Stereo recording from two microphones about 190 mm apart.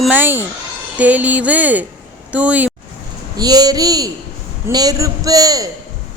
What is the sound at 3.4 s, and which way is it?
A man's voice, 20° right (ahead or behind).